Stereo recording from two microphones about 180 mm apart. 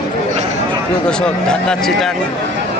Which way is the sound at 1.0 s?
5° left (ahead or behind).